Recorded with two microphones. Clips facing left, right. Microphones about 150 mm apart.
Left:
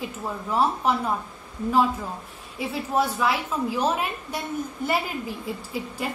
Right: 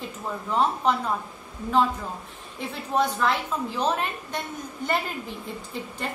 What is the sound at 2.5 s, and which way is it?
A woman's voice, 5° left (ahead or behind).